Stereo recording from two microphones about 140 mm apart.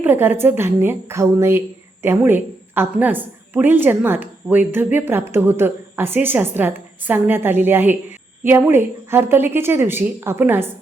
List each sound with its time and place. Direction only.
0.0 s a woman's voice: 15° right (ahead or behind)